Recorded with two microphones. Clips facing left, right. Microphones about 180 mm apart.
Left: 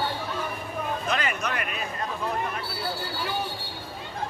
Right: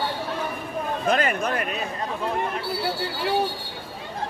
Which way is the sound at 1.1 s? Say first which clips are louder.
Right 9 dB; 50° right (ahead or behind).